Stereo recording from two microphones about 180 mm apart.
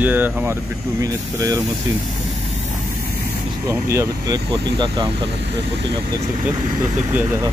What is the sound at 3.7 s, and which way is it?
Speech, 15° right (ahead or behind).